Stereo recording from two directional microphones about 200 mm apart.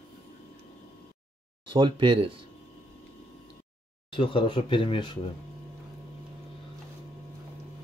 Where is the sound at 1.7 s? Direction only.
25° right (ahead or behind).